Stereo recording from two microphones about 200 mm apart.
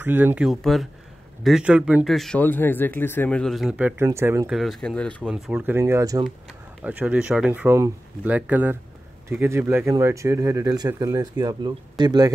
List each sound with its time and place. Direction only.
0.0 s speech: 10° right (ahead or behind)
4.6 s speech: centre (ahead or behind)
5.3 s speech: 5° right (ahead or behind)
6.8 s speech: 10° right (ahead or behind)